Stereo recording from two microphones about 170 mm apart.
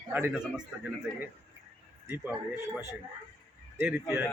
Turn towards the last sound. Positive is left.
turn(degrees=-10)  # may be behind; listen again after turning